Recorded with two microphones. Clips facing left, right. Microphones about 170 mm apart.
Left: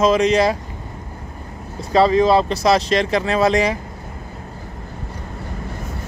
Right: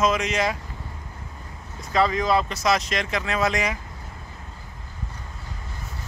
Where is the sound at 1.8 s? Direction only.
30° left (ahead or behind).